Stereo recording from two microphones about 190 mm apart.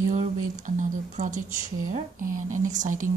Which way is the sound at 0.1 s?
40° right (ahead or behind).